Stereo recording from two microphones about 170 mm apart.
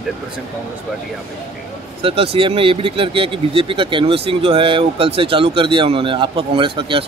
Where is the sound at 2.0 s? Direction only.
35° right (ahead or behind).